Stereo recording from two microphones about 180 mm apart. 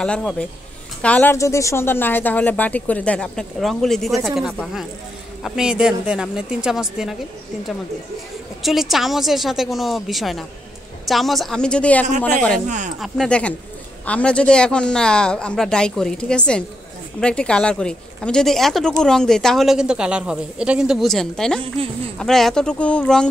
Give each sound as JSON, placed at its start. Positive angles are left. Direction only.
{"t": 0.0, "sound": "speech", "side_deg": 5}
{"t": 8.6, "sound": "speech", "side_deg": 0}
{"t": 12.6, "sound": "speech", "side_deg": -45}
{"t": 13.0, "sound": "speech", "side_deg": 5}
{"t": 21.8, "sound": "speech", "side_deg": -30}
{"t": 22.2, "sound": "speech", "side_deg": 0}